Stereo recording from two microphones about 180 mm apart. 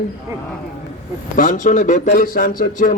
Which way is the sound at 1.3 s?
45° left (ahead or behind).